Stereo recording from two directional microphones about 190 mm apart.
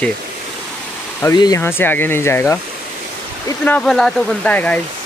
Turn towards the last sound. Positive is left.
turn(degrees=5)  # may be behind; listen again after turning